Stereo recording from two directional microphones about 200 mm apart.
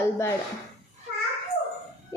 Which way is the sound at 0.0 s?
15° left (ahead or behind).